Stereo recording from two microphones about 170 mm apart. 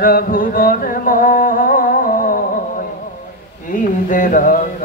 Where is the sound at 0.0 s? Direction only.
55° left (ahead or behind).